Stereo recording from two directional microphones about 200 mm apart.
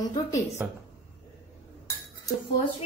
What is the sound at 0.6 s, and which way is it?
Speech, 10° right (ahead or behind).